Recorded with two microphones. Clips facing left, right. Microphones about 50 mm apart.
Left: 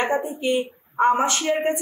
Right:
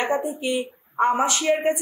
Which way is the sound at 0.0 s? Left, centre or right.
Left.